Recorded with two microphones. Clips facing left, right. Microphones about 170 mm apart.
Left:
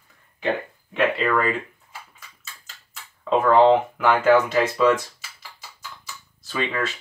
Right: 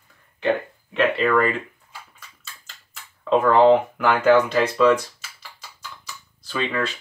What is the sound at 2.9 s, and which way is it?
Speech, centre (ahead or behind).